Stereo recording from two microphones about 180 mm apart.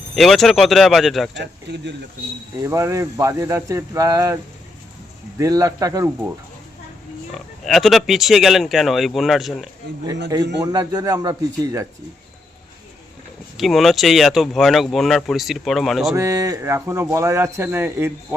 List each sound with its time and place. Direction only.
0.2 s speech: centre (ahead or behind)
1.4 s speech: 75° right (ahead or behind)
2.6 s speech: 15° right (ahead or behind)
5.4 s a man's voice: 20° right (ahead or behind)
7.3 s speech: centre (ahead or behind)
10.6 s a man's voice: 20° right (ahead or behind)
13.6 s speech: centre (ahead or behind)
16.1 s speech: 15° right (ahead or behind)